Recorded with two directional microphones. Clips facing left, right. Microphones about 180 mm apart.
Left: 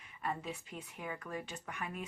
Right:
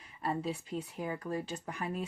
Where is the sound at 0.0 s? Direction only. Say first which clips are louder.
Right 5 dB; 35° right (ahead or behind).